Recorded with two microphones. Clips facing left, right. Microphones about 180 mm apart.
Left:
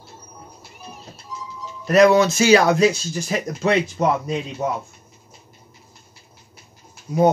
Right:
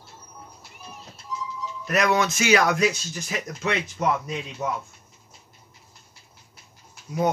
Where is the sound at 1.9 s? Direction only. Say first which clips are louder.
Left 9 dB; 30° left (ahead or behind).